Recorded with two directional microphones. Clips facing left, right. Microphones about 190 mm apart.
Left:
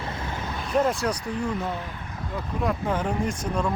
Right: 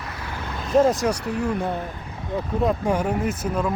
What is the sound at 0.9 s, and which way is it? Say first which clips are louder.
Speech: right 4 dB; 10° right (ahead or behind).